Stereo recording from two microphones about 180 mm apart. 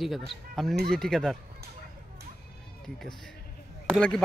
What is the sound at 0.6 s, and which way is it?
Speech, centre (ahead or behind).